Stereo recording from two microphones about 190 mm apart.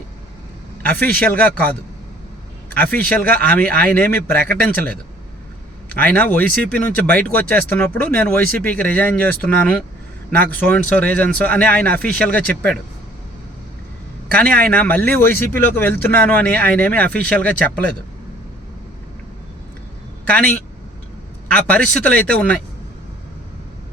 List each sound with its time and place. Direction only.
0.8 s speech: 5° left (ahead or behind)
2.7 s speech: 10° left (ahead or behind)
6.0 s speech: 10° left (ahead or behind)
14.7 s speech: 10° left (ahead or behind)
20.2 s speech: 5° left (ahead or behind)